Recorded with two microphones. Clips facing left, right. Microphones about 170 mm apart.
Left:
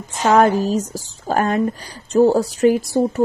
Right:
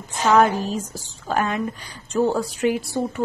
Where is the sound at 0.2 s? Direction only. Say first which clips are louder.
Left 3 dB; 45° left (ahead or behind).